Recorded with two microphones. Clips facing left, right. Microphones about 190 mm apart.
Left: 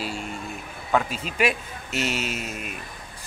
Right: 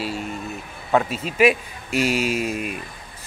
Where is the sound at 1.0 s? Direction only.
45° right (ahead or behind).